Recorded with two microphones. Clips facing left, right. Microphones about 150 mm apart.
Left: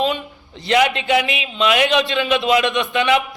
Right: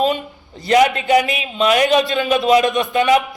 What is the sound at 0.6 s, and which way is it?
A man's voice, 45° right (ahead or behind).